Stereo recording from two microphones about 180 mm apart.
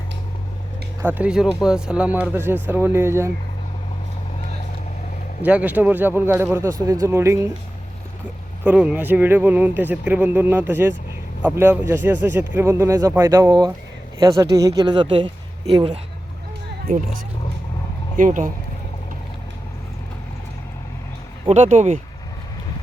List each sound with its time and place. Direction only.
1.0 s speech: 5° right (ahead or behind)
5.4 s speech: 10° right (ahead or behind)
8.6 s speech: 5° right (ahead or behind); by 15.3 s 25° right (ahead or behind)
18.2 s speech: 45° right (ahead or behind)
21.4 s speech: 40° right (ahead or behind)